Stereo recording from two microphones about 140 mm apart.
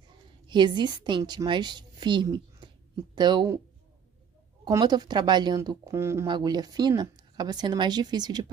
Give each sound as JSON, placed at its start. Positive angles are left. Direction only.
{"t": 0.5, "sound": "a woman's voice", "side_deg": -35}
{"t": 4.6, "sound": "speech", "side_deg": -30}
{"t": 6.2, "sound": "a woman's voice", "side_deg": -30}